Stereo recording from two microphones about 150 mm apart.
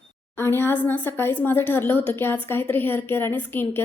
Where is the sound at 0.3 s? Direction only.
15° left (ahead or behind).